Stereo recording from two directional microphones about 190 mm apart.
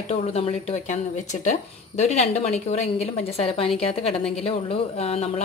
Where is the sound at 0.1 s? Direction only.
35° left (ahead or behind).